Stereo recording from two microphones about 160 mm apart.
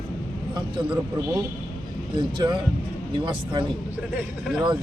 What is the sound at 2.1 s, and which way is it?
A man's voice, 30° right (ahead or behind).